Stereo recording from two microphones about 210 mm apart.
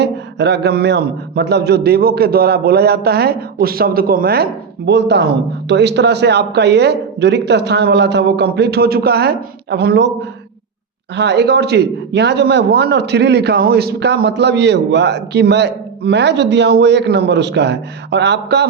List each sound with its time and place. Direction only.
0.0 s a man's voice: 55° right (ahead or behind)
11.1 s a man's voice: 55° right (ahead or behind)